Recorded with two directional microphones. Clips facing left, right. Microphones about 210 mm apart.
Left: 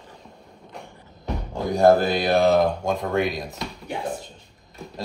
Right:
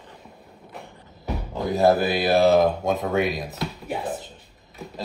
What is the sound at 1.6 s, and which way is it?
Speech, 5° right (ahead or behind).